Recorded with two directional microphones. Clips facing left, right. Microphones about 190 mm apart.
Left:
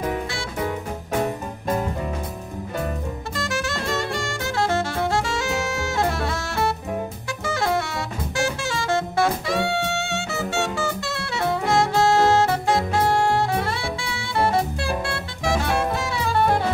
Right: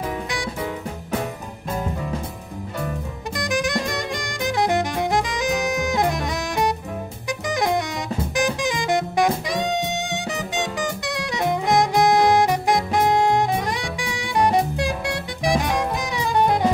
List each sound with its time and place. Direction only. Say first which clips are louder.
3.3 s saxophone: right 5 dB; 15° right (ahead or behind)
8.4 s music: right 2 dB; 15° right (ahead or behind)